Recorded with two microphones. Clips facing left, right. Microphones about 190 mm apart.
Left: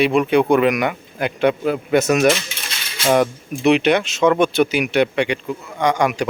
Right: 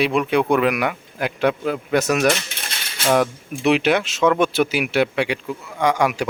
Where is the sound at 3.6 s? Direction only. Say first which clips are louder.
Left 2 dB; 5° right (ahead or behind).